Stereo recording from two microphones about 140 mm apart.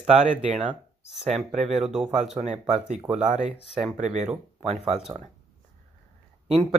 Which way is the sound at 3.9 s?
55° right (ahead or behind).